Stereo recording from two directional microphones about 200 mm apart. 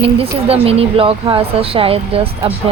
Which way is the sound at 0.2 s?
30° right (ahead or behind).